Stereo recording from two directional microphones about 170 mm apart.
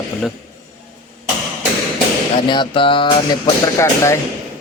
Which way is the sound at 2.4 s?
30° left (ahead or behind).